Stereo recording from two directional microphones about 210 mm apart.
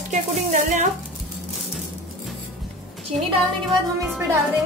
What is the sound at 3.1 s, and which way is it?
A woman's voice, centre (ahead or behind).